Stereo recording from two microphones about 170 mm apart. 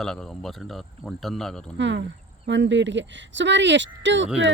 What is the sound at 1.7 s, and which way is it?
Speech, 90° right.